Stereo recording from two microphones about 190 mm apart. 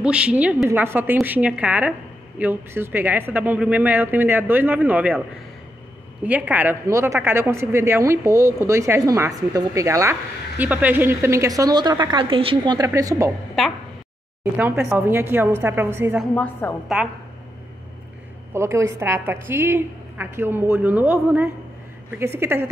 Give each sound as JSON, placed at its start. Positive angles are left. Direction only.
{"t": 0.0, "sound": "a woman's voice", "side_deg": -5}
{"t": 6.2, "sound": "a woman's voice", "side_deg": -10}
{"t": 14.9, "sound": "a woman's voice", "side_deg": -10}
{"t": 16.2, "sound": "a woman's voice", "side_deg": 5}
{"t": 18.5, "sound": "a woman's voice", "side_deg": -15}